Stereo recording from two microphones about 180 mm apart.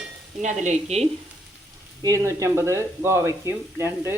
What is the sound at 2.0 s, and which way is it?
Speech, 20° right (ahead or behind).